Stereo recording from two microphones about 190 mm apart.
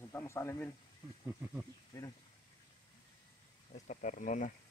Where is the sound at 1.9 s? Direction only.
15° left (ahead or behind).